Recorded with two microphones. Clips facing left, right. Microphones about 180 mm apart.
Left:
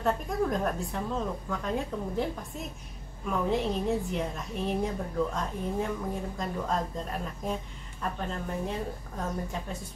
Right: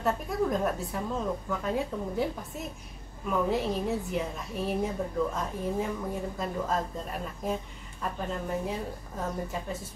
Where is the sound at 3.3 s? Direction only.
5° right (ahead or behind).